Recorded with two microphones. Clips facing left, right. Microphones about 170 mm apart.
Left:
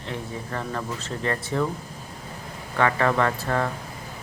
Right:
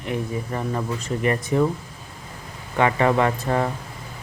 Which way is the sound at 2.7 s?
20° right (ahead or behind).